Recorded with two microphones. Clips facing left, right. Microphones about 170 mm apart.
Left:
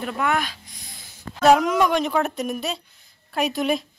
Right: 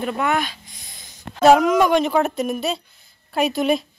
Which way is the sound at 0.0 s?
Centre (ahead or behind).